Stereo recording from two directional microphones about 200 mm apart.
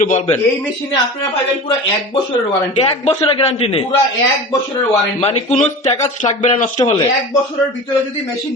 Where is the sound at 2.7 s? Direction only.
25° left (ahead or behind).